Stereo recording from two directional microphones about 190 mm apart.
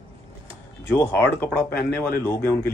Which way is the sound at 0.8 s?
10° left (ahead or behind).